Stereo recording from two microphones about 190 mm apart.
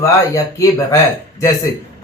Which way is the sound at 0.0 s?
15° left (ahead or behind).